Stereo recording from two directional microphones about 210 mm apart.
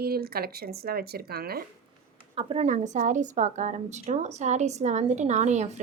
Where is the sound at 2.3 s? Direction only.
30° right (ahead or behind).